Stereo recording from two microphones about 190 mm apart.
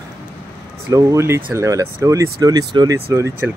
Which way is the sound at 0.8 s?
15° right (ahead or behind).